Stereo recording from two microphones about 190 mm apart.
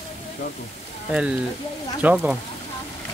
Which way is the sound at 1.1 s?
5° right (ahead or behind).